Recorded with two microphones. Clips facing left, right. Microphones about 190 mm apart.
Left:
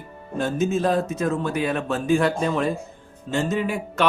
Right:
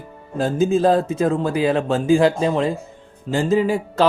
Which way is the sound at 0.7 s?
30° right (ahead or behind).